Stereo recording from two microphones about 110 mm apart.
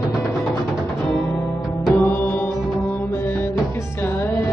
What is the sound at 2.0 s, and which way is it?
Music, 20° left (ahead or behind).